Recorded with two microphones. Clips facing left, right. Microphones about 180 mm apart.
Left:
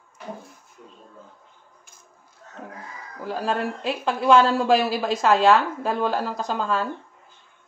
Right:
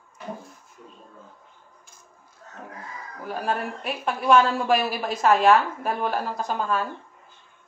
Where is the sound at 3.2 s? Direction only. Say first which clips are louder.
Left 2 dB; 90° left.